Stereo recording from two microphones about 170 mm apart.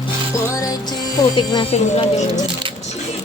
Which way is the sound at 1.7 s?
40° left (ahead or behind).